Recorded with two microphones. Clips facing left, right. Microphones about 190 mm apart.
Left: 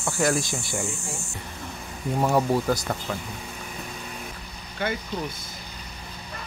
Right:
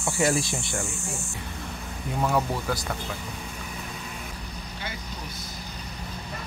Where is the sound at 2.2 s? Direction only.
35° left (ahead or behind).